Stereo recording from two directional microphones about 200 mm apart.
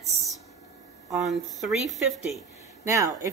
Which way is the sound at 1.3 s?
Centre (ahead or behind).